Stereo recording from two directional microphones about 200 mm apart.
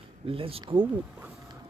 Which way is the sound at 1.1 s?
5° right (ahead or behind).